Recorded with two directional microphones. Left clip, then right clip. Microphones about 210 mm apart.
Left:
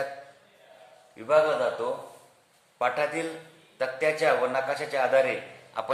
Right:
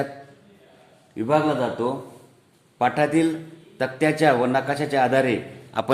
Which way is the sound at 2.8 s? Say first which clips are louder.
Right 7 dB; 45° right (ahead or behind).